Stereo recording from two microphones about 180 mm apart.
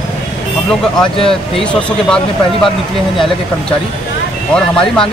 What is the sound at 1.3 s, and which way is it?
Speech, 5° left (ahead or behind).